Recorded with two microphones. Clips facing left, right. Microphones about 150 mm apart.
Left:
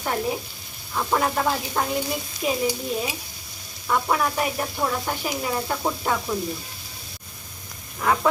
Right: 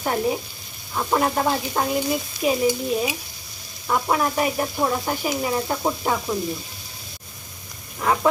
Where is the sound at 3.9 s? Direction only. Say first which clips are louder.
Right 1 dB; 10° right (ahead or behind).